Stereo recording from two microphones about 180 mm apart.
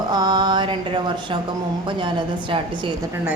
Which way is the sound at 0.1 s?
20° right (ahead or behind).